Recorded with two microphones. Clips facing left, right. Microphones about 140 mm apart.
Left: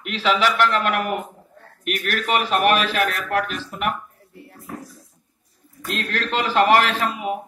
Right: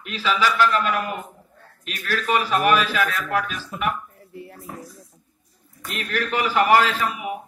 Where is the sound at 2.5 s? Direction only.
70° left (ahead or behind).